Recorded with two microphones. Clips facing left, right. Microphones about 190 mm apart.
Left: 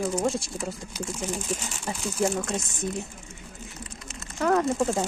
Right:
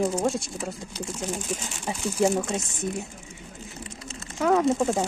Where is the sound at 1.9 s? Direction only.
15° right (ahead or behind).